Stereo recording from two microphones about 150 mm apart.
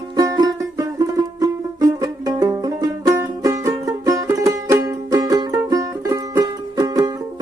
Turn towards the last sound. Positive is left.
turn(degrees=-25)  # may be behind; listen again after turning